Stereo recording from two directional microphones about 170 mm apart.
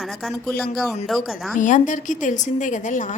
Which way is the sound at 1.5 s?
50° left (ahead or behind).